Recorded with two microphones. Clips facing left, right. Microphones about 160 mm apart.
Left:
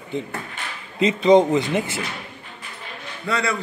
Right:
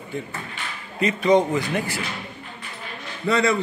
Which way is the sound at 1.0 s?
20° left (ahead or behind).